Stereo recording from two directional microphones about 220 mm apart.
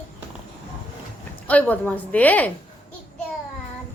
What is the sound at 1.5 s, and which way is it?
A woman's voice, 5° left (ahead or behind).